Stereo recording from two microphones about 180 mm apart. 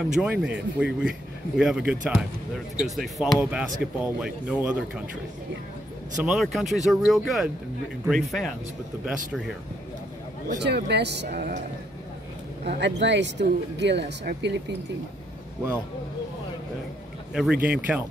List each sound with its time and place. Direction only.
0.0 s speech: 5° right (ahead or behind)
6.2 s speech: centre (ahead or behind)
10.6 s speech: 70° right (ahead or behind)
12.7 s speech: 75° right (ahead or behind)
17.3 s a man's voice: 5° right (ahead or behind)